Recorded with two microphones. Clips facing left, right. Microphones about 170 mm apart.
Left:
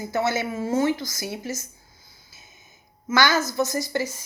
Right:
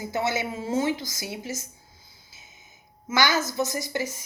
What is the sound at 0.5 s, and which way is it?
Speech, 50° left (ahead or behind).